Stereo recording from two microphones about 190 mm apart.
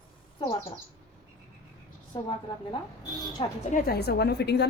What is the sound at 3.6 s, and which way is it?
A woman's voice, 45° left (ahead or behind).